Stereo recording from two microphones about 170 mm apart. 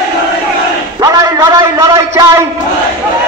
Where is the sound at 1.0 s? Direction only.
20° right (ahead or behind).